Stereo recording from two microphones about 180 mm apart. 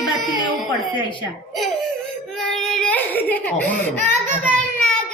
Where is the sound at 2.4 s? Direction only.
Centre (ahead or behind).